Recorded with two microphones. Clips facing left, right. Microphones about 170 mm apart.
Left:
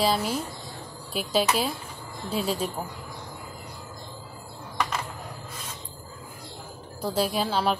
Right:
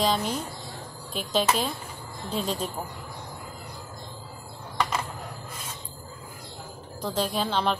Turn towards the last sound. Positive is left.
turn(degrees=5)  # may be behind; listen again after turning